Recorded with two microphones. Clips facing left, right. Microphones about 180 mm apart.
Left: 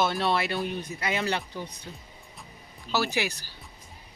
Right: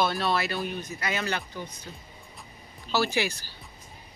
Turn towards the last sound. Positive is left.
turn(degrees=15)  # may be behind; listen again after turning